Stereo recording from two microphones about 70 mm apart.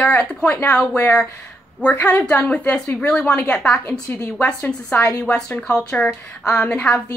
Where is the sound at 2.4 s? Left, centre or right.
Centre.